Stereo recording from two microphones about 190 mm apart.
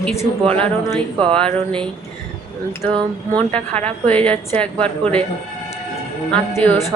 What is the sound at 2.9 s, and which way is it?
Speech, 25° right (ahead or behind).